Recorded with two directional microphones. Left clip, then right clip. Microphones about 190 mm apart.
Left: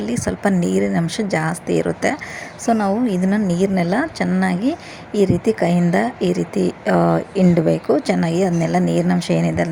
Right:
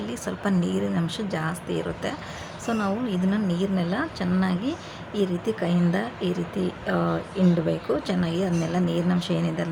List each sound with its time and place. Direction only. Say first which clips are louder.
0.0 s speech: left 9 dB; 30° left (ahead or behind)